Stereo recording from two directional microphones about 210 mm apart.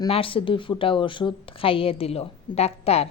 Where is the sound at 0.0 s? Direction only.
25° left (ahead or behind).